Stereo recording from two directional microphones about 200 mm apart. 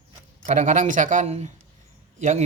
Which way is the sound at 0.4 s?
35° right (ahead or behind).